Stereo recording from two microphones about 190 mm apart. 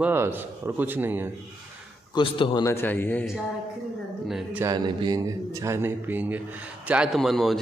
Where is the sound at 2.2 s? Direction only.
25° left (ahead or behind).